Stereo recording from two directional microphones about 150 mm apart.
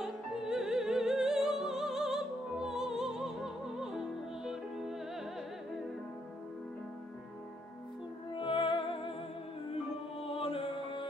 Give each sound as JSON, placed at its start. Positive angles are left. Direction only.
{"t": 0.0, "sound": "music", "side_deg": -5}
{"t": 8.4, "sound": "music", "side_deg": 35}
{"t": 10.2, "sound": "music", "side_deg": 40}